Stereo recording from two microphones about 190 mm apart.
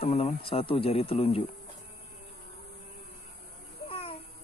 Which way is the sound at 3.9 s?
30° left (ahead or behind).